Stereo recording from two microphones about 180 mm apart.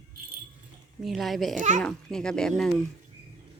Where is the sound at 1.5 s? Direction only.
45° right (ahead or behind).